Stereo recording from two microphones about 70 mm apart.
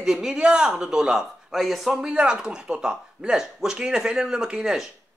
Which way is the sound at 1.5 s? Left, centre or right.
Centre.